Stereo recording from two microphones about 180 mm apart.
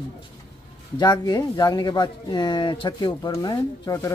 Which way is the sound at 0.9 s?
20° left (ahead or behind).